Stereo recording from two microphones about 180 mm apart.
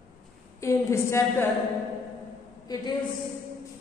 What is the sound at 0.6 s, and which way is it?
Speech, 15° left (ahead or behind).